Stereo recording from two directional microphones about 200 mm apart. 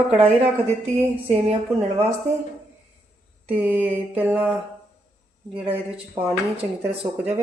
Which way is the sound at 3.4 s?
5° right (ahead or behind).